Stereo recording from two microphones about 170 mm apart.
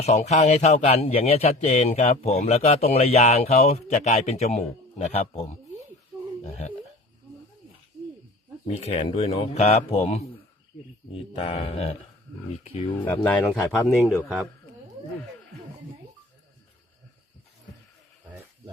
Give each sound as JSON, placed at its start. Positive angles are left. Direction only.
{"t": 0.0, "sound": "a man's voice", "side_deg": 40}
{"t": 6.4, "sound": "a man's voice", "side_deg": 40}
{"t": 8.8, "sound": "a man's voice", "side_deg": 35}
{"t": 13.1, "sound": "a man's voice", "side_deg": 5}